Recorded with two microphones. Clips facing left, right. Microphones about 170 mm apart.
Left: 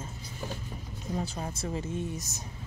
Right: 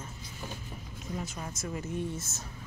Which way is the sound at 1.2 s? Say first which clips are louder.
Left 4 dB; 35° left (ahead or behind).